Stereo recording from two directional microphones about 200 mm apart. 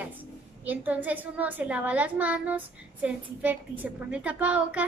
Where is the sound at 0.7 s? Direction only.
10° right (ahead or behind).